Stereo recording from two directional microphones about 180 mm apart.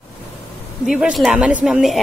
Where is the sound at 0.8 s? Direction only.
5° right (ahead or behind).